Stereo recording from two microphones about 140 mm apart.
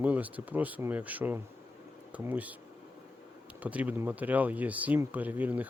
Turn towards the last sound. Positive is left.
turn(degrees=-10)  # may be behind; listen again after turning